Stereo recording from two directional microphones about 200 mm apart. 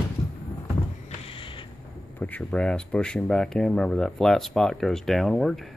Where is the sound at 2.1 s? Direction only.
5° left (ahead or behind).